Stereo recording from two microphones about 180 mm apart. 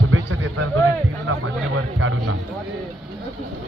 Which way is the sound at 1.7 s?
90° right.